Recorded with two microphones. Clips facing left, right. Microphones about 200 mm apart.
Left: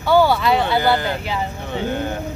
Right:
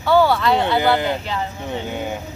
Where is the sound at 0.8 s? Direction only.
20° right (ahead or behind).